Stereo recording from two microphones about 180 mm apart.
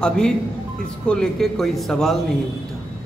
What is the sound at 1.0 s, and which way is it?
Speech, 5° left (ahead or behind).